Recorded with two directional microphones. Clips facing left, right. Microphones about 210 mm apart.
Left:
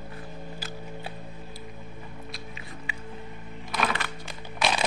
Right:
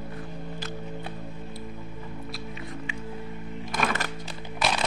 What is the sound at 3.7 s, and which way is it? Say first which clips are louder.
Music: right 1 dB; 45° right (ahead or behind).